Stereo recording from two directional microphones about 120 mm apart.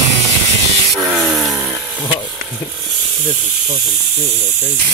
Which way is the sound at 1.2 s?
Centre (ahead or behind).